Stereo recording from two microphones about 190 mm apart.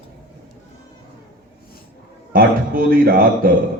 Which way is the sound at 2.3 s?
50° right (ahead or behind).